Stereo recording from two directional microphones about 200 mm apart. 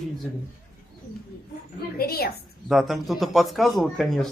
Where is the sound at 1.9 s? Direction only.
50° left (ahead or behind).